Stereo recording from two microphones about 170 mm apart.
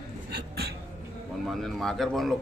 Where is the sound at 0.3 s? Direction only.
75° right (ahead or behind).